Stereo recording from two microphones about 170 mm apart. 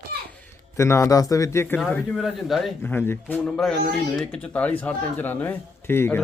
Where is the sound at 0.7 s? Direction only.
15° left (ahead or behind).